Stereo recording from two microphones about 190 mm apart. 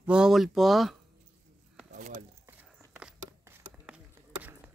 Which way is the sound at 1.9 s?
40° right (ahead or behind).